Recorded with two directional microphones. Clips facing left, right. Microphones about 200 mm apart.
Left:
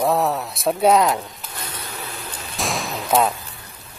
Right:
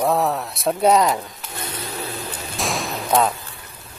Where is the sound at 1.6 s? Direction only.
25° right (ahead or behind).